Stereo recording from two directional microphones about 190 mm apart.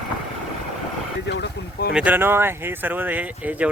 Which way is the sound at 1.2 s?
65° left (ahead or behind).